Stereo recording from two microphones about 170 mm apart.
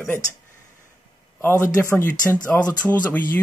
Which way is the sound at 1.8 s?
10° left (ahead or behind).